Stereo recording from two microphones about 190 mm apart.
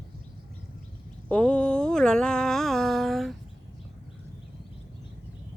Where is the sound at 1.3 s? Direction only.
5° left (ahead or behind).